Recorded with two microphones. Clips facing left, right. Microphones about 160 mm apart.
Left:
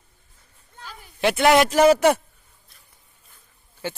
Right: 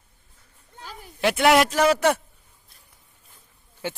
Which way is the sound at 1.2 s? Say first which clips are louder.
Left 1 dB; centre (ahead or behind).